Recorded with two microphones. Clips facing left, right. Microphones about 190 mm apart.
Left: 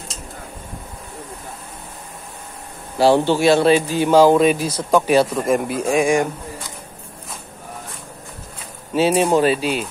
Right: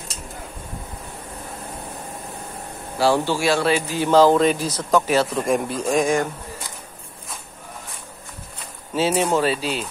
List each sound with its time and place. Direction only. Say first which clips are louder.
3.0 s a man's voice: left 5 dB; 20° left (ahead or behind)
4.1 s speech: left 2 dB; 10° left (ahead or behind)
8.9 s speech: left 4 dB; 15° left (ahead or behind)